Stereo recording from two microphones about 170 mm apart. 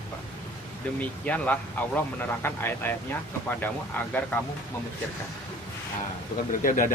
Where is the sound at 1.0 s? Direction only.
10° left (ahead or behind).